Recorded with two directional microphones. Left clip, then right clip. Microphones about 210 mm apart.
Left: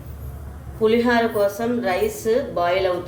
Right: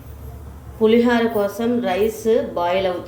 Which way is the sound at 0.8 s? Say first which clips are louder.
Right 2 dB; 20° right (ahead or behind).